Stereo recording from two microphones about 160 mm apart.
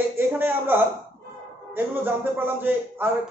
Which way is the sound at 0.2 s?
10° right (ahead or behind).